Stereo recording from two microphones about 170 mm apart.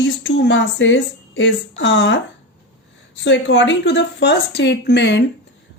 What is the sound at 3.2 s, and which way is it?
A woman's voice, 90° left.